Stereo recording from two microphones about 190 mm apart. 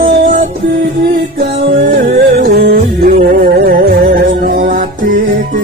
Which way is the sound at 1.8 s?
50° right (ahead or behind).